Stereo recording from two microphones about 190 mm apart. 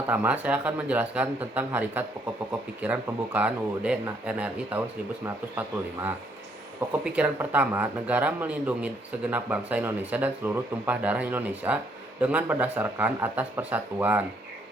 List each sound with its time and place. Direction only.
0.1 s speech: 10° right (ahead or behind)